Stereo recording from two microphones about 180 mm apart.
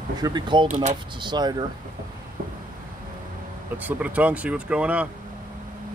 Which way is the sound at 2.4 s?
55° right (ahead or behind).